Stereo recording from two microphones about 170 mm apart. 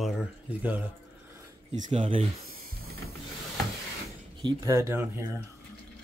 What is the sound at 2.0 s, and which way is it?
Speech, 30° right (ahead or behind).